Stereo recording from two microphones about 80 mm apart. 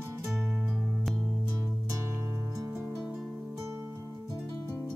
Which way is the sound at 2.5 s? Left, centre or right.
Right.